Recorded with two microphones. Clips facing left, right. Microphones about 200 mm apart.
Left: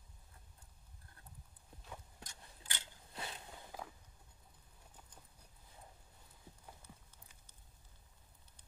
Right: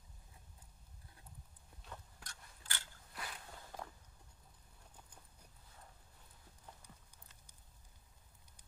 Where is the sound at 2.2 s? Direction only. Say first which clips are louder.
Left 2 dB; 20° left (ahead or behind).